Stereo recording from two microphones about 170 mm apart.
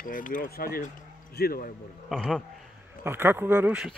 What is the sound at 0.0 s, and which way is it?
Speech, 50° left (ahead or behind).